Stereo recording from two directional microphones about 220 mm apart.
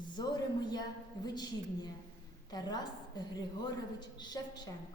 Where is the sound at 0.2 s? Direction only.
20° left (ahead or behind).